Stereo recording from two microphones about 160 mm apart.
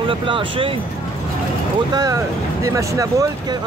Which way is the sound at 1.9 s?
20° right (ahead or behind).